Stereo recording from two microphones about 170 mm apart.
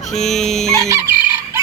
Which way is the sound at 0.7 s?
15° right (ahead or behind).